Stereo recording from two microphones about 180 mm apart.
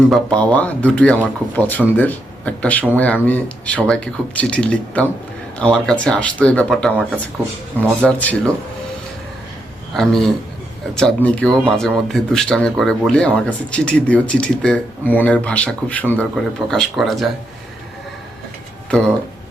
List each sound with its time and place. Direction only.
0.1 s speech: 5° left (ahead or behind)
9.9 s speech: centre (ahead or behind)